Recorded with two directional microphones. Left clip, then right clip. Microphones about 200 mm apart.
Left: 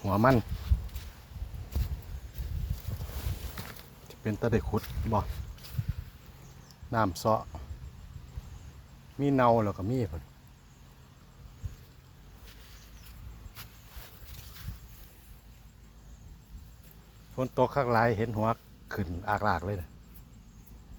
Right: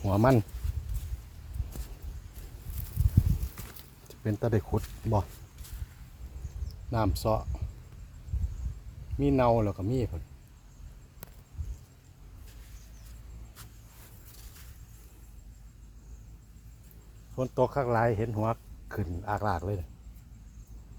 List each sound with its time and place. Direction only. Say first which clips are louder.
0.0 s speech: even; 15° right (ahead or behind)
3.6 s a sound: left 5 dB; 30° left (ahead or behind)
4.1 s speech: even; 15° right (ahead or behind)
6.9 s speech: left 2 dB; centre (ahead or behind)
9.1 s speech: left 1 dB; 5° right (ahead or behind)
17.3 s speech: even; centre (ahead or behind)